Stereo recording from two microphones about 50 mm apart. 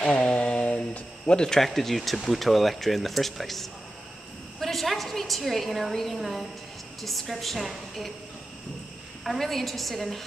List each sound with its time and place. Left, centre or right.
0.0 s a sound: left
1.4 s a woman's voice: centre
9.2 s speech: centre